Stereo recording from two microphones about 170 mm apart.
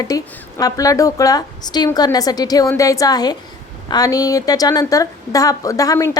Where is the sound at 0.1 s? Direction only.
20° left (ahead or behind).